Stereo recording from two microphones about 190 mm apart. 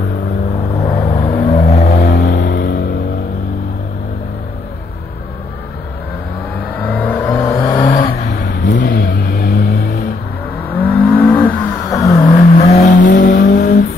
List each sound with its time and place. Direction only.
1.1 s vehicle: 30° left (ahead or behind)
2.0 s vehicle: 45° left (ahead or behind)
6.8 s vehicle: 10° left (ahead or behind)
7.3 s vehicle: 20° left (ahead or behind)
8.2 s vehicle: 40° left (ahead or behind)
10.6 s vehicle: 10° left (ahead or behind)
12.4 s vehicle: 35° left (ahead or behind)